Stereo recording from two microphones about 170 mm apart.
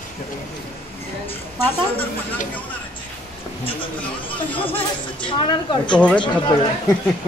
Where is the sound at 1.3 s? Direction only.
10° left (ahead or behind).